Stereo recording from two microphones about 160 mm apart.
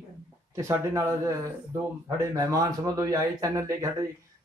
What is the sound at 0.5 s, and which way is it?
Speech, 20° right (ahead or behind).